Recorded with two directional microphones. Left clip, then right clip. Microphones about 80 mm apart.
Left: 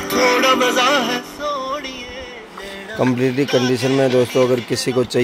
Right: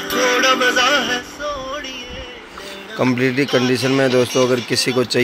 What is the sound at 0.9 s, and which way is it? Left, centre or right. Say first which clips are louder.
Music: even; left.